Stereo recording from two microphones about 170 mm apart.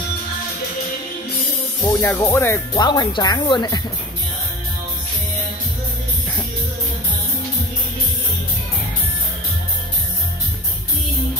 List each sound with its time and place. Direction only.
1.9 s speech: 15° left (ahead or behind)
2.7 s speech: 25° left (ahead or behind)